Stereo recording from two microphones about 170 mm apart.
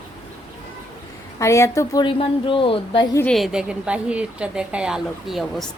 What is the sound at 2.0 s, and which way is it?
Speech, 30° left (ahead or behind).